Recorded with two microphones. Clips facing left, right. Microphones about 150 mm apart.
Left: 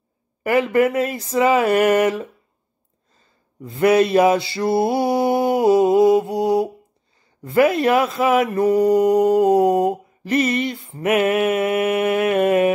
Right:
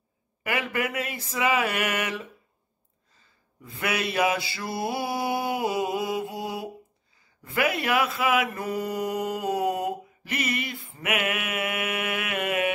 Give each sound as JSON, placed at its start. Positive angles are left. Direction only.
{"t": 0.4, "sound": "speech", "side_deg": 40}
{"t": 3.7, "sound": "speech", "side_deg": 35}